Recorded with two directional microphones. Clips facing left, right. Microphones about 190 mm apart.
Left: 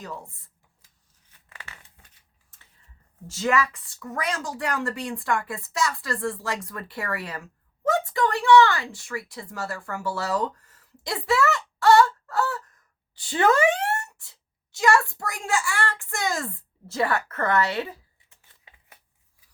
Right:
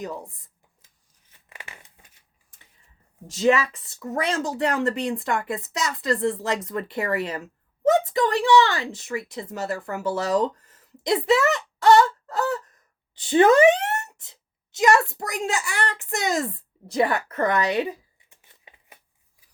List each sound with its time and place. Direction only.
0.0 s speech: 20° right (ahead or behind)
1.3 s a sound: 15° right (ahead or behind)
3.2 s a woman's voice: 20° right (ahead or behind)